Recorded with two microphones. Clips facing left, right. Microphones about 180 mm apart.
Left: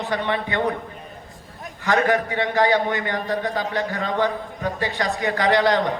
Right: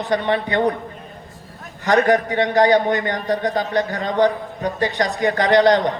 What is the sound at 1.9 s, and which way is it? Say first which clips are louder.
A man's voice: right 4 dB; 40° right (ahead or behind).